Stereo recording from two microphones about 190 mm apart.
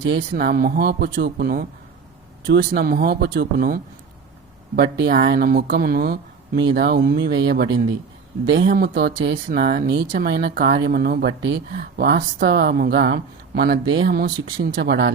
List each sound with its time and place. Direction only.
0.0 s speech: 75° right (ahead or behind)
0.3 s speech: 50° right (ahead or behind)
4.8 s speech: 60° right (ahead or behind)